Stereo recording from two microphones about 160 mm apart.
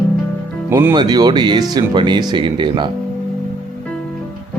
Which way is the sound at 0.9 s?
25° right (ahead or behind).